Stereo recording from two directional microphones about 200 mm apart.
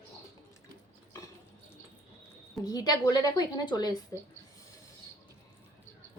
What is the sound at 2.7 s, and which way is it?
A woman's voice, 20° left (ahead or behind).